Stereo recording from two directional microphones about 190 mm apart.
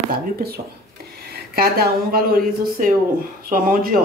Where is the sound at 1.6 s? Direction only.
50° right (ahead or behind).